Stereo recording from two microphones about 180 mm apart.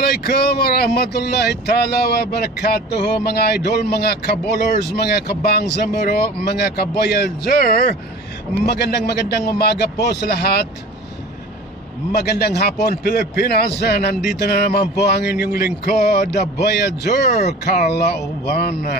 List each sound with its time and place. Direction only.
0.0 s a man's voice: 60° left (ahead or behind)
12.1 s a man's voice: 65° left (ahead or behind)